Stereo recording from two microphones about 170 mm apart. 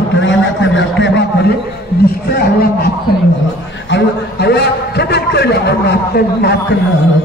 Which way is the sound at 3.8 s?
85° left.